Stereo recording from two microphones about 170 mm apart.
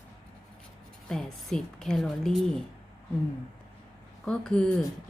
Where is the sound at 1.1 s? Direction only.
5° left (ahead or behind).